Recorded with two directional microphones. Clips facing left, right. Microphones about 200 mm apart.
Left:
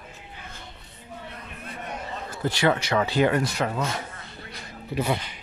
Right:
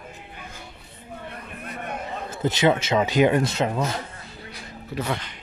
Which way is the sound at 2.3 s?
20° right (ahead or behind).